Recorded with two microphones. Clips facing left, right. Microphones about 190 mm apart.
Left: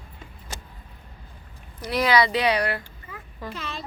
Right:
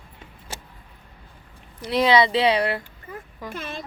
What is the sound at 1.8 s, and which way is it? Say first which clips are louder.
Speech: right 3 dB; 25° right (ahead or behind).